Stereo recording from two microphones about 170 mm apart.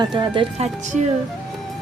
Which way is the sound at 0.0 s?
25° right (ahead or behind).